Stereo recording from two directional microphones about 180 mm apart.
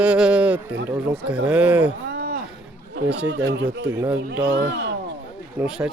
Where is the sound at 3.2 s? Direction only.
75° right (ahead or behind).